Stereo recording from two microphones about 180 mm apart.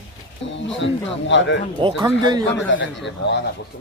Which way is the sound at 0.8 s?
90° left.